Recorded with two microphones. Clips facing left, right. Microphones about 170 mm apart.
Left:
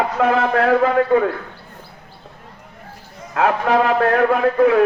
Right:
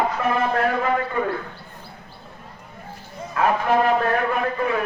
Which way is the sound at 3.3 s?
75° left (ahead or behind).